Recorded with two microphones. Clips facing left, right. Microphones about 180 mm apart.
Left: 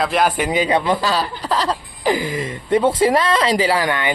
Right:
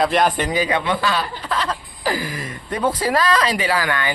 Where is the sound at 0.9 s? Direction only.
35° left (ahead or behind).